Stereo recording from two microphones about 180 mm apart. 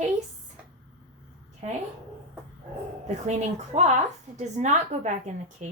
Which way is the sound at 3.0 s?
40° right (ahead or behind).